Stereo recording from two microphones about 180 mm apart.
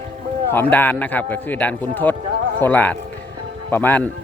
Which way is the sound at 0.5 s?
10° left (ahead or behind).